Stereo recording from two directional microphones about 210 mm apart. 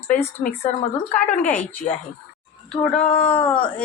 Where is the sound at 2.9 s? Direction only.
30° left (ahead or behind).